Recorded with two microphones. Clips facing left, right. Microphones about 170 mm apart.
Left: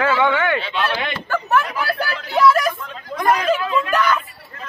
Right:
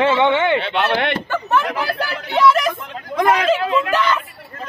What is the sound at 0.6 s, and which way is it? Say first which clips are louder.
Speech: right 4 dB; 65° right (ahead or behind).